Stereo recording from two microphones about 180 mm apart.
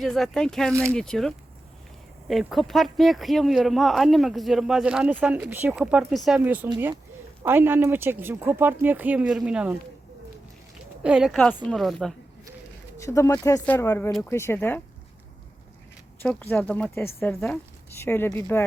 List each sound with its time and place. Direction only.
0.0 s speech: centre (ahead or behind)
11.0 s speech: 5° right (ahead or behind)
13.0 s speech: 15° left (ahead or behind)
16.2 s speech: 10° left (ahead or behind)